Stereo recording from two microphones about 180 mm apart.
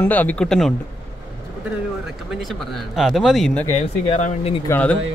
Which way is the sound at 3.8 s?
40° left (ahead or behind).